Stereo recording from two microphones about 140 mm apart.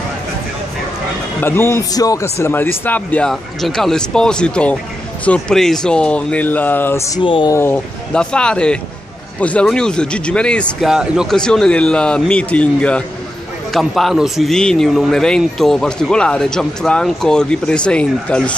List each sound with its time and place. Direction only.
1.4 s speech: 15° left (ahead or behind)
7.2 s speech: 35° left (ahead or behind)
7.5 s speech: 15° left (ahead or behind)
8.1 s speech: 5° left (ahead or behind)
10.9 s a man's voice: 5° right (ahead or behind)